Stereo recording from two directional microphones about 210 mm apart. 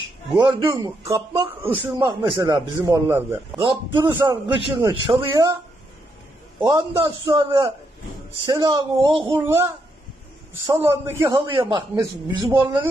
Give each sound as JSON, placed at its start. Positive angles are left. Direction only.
{"t": 0.4, "sound": "speech", "side_deg": -20}
{"t": 2.2, "sound": "a man's voice", "side_deg": -20}
{"t": 6.6, "sound": "a man's voice", "side_deg": -15}
{"t": 7.3, "sound": "speech", "side_deg": -20}
{"t": 9.4, "sound": "a man's voice", "side_deg": -10}
{"t": 10.7, "sound": "a man's voice", "side_deg": -10}